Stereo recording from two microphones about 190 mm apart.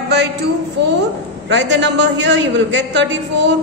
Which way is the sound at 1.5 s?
70° right (ahead or behind).